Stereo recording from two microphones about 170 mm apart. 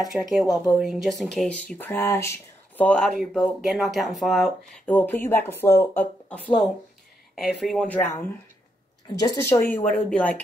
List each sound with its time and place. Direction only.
0.1 s speech: centre (ahead or behind)
9.2 s a woman's voice: 20° left (ahead or behind)
10.0 s speech: 10° left (ahead or behind)